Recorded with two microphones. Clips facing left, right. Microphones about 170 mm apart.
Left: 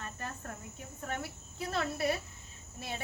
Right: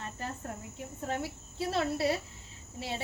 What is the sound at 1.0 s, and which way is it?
Speech, 25° right (ahead or behind).